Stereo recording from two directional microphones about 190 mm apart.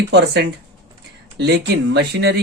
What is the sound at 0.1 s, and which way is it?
Speech, 65° right (ahead or behind).